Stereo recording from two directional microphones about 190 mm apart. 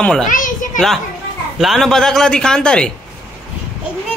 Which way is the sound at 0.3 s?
45° left (ahead or behind).